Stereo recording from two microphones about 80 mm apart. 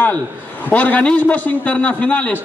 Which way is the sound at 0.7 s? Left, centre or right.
Centre.